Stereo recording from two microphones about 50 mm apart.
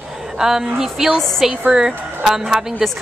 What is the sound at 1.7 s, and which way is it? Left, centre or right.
Speech, centre.